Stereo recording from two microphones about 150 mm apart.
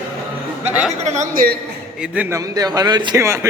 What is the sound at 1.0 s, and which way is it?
Speech, 50° right (ahead or behind).